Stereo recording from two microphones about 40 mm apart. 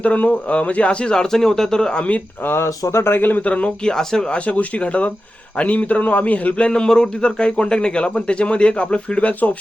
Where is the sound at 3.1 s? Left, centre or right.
Left.